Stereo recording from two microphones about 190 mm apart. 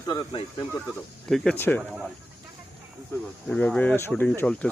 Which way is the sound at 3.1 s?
10° left (ahead or behind).